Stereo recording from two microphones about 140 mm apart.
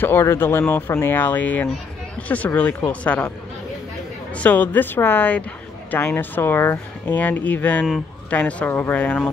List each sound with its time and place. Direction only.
0.0 s speech: 15° left (ahead or behind)
4.4 s speech: 10° left (ahead or behind)